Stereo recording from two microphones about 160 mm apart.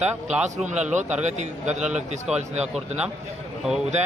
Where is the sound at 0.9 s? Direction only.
45° right (ahead or behind).